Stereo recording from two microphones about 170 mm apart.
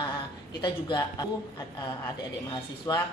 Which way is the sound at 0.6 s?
25° left (ahead or behind).